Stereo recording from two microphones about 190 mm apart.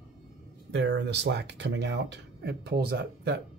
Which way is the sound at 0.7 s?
65° right (ahead or behind).